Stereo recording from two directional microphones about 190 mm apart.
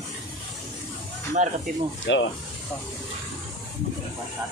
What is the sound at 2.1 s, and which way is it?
Speech, 75° left (ahead or behind).